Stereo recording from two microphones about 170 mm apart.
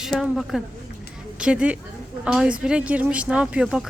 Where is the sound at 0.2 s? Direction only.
Centre (ahead or behind).